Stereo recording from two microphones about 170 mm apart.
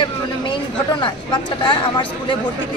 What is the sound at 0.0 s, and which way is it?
Speech, 25° left (ahead or behind).